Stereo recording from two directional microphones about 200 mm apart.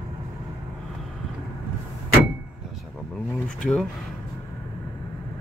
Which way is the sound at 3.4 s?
5° left (ahead or behind).